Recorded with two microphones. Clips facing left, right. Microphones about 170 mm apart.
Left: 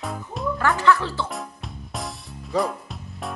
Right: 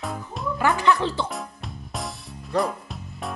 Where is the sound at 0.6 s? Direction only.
20° right (ahead or behind).